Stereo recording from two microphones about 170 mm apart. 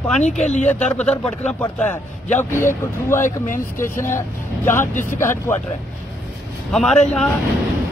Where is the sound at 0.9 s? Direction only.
5° left (ahead or behind).